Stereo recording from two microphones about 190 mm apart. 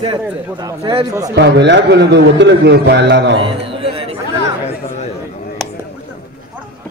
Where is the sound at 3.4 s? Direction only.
30° right (ahead or behind).